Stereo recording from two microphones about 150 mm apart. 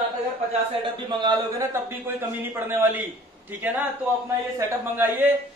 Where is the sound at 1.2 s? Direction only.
25° right (ahead or behind).